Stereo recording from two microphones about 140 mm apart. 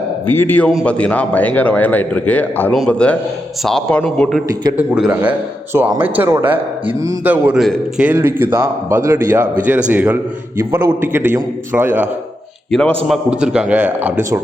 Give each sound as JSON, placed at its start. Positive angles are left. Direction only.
{"t": 0.3, "sound": "a man's voice", "side_deg": 15}
{"t": 4.8, "sound": "a man's voice", "side_deg": -10}
{"t": 10.6, "sound": "a man's voice", "side_deg": -20}
{"t": 12.7, "sound": "a man's voice", "side_deg": 0}